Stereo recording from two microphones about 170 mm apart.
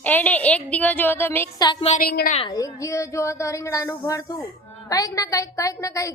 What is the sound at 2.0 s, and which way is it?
Speech, 60° left (ahead or behind).